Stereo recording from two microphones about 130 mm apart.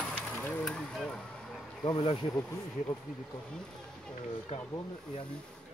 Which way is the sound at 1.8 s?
35° left (ahead or behind).